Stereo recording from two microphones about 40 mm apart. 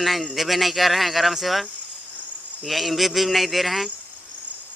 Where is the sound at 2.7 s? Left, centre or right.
Centre.